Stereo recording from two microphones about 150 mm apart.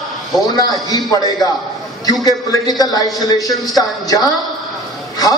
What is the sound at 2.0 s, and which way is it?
A man's voice, 25° left (ahead or behind).